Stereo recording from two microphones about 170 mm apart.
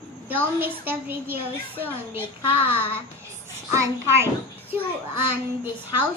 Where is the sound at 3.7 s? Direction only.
15° right (ahead or behind).